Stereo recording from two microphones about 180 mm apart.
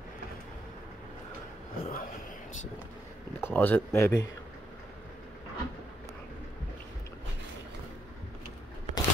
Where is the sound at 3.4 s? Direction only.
10° left (ahead or behind).